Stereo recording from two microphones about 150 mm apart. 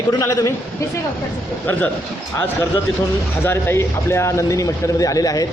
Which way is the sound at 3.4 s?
15° left (ahead or behind).